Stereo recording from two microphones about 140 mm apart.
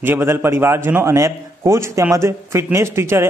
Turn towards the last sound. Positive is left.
turn(degrees=-20)  # may be behind; listen again after turning